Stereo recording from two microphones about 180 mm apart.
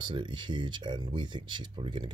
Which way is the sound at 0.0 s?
25° right (ahead or behind).